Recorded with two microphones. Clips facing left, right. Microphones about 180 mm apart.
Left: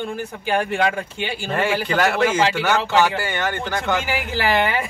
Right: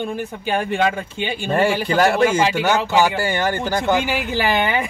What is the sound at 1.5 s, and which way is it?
Speech, 30° right (ahead or behind).